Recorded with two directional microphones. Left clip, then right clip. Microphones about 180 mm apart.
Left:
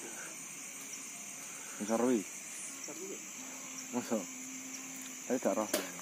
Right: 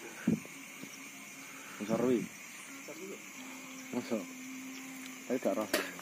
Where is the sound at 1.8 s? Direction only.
15° right (ahead or behind).